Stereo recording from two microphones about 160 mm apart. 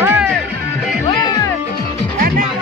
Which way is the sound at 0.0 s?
10° right (ahead or behind).